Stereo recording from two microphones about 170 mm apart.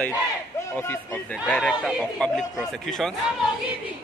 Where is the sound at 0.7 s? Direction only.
15° left (ahead or behind).